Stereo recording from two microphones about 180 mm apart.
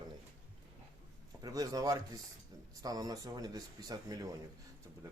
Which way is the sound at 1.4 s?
20° right (ahead or behind).